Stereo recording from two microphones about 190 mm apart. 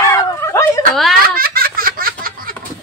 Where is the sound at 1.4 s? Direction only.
50° right (ahead or behind).